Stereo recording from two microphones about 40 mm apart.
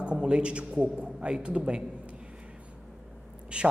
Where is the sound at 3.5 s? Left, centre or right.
Right.